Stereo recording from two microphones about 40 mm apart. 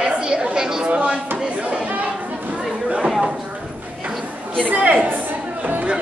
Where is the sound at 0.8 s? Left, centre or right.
Right.